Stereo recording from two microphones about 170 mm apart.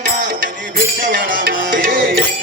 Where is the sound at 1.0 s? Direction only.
55° right (ahead or behind).